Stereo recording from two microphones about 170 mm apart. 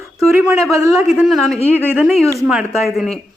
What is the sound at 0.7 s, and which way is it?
Speech, 20° right (ahead or behind).